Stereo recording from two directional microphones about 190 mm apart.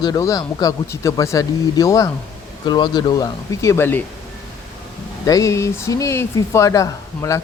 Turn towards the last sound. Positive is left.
turn(degrees=15)  # may be behind; listen again after turning